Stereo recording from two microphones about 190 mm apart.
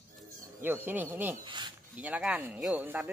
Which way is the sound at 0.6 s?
10° right (ahead or behind).